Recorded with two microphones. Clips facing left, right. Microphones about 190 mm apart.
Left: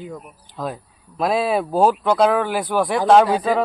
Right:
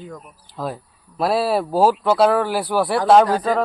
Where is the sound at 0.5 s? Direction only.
5° right (ahead or behind).